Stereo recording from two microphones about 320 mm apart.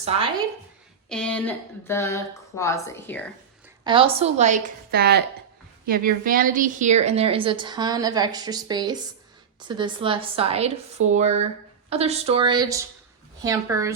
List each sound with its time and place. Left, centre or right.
1.1 s speech: centre
3.8 s a woman's voice: centre